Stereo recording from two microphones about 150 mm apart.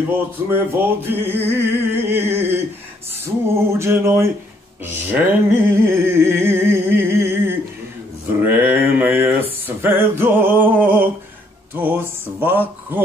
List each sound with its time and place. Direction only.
0.5 s music: 15° right (ahead or behind)
8.4 s a sound: 15° right (ahead or behind)
11.7 s music: 15° right (ahead or behind)